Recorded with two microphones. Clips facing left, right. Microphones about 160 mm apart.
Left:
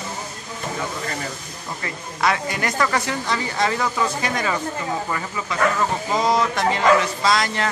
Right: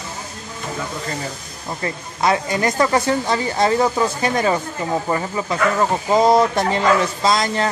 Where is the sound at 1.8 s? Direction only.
25° right (ahead or behind).